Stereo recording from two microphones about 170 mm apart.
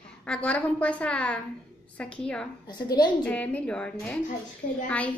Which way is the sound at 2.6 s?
25° left (ahead or behind).